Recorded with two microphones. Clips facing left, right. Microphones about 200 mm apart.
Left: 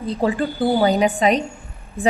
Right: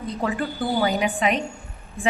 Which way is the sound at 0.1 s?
30° left (ahead or behind).